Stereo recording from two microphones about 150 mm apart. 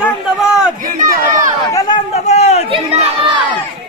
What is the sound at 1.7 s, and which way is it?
Speech, 25° left (ahead or behind).